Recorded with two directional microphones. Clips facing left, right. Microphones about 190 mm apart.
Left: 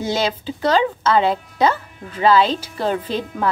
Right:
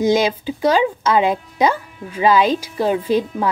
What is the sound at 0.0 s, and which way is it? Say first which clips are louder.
Speech: right 5 dB; 15° right (ahead or behind).